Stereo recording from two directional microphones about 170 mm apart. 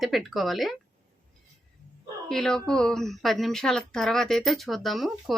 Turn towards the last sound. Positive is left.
turn(degrees=0)  # may be behind; listen again after turning